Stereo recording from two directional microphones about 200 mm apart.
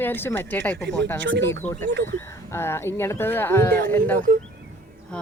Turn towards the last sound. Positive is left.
turn(degrees=10)  # may be behind; listen again after turning